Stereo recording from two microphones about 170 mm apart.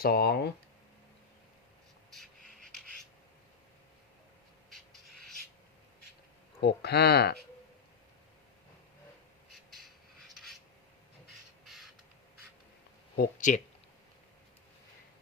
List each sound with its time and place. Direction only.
0.0 s speech: 70° left (ahead or behind)
2.1 s a sound: 5° left (ahead or behind)
6.6 s speech: 75° left (ahead or behind)
11.6 s crow: centre (ahead or behind)
13.1 s speech: 55° left (ahead or behind)